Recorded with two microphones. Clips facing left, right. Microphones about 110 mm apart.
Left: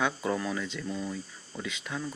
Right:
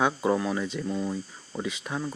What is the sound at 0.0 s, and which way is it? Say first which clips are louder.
Speech: right 5 dB; 20° right (ahead or behind).